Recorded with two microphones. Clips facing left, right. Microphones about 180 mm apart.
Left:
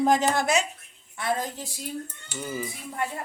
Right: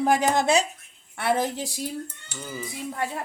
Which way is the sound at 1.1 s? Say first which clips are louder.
Right 4 dB; 70° right (ahead or behind).